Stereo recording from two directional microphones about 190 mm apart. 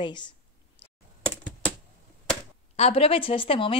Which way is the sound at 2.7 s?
30° left (ahead or behind).